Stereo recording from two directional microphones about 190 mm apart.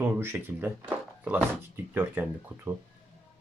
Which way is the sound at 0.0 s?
10° right (ahead or behind).